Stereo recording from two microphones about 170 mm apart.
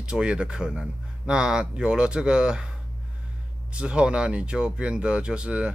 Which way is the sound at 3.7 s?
5° right (ahead or behind).